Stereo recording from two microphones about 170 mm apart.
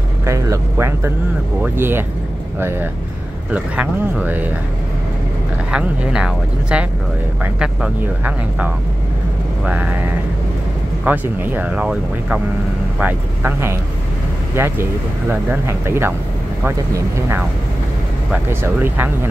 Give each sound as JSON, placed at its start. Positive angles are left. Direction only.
{"t": 0.2, "sound": "speech", "side_deg": -15}
{"t": 3.5, "sound": "speech", "side_deg": -10}
{"t": 5.7, "sound": "speech", "side_deg": -5}
{"t": 9.7, "sound": "speech", "side_deg": -10}
{"t": 11.1, "sound": "speech", "side_deg": -10}